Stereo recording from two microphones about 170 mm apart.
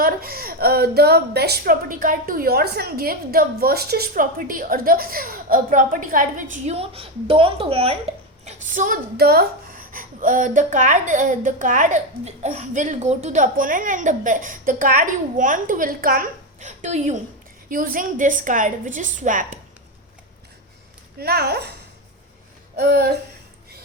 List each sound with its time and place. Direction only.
0.0 s a woman's voice: 60° right (ahead or behind); by 7.9 s 35° right (ahead or behind)
8.4 s a woman's voice: 50° right (ahead or behind)
17.7 s a woman's voice: 55° right (ahead or behind)
21.2 s speech: 65° right (ahead or behind)
22.8 s a woman's voice: 65° right (ahead or behind)